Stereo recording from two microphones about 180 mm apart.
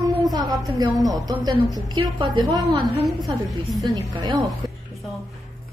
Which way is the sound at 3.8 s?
25° right (ahead or behind).